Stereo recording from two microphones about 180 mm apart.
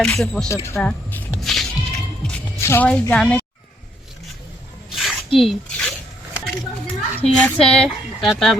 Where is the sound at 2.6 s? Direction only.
10° left (ahead or behind).